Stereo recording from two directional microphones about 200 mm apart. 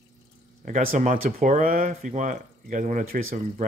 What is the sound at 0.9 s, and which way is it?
Speech, 40° right (ahead or behind).